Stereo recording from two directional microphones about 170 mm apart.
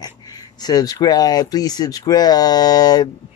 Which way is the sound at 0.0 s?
25° left (ahead or behind).